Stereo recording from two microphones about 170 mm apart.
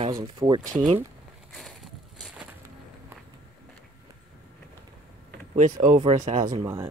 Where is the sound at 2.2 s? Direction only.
5° right (ahead or behind).